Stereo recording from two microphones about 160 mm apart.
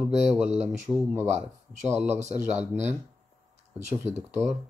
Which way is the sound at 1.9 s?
15° right (ahead or behind).